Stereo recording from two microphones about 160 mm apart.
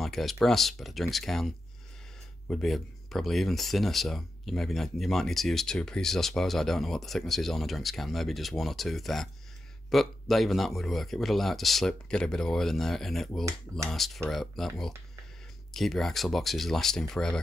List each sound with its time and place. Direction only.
0.0 s speech: centre (ahead or behind)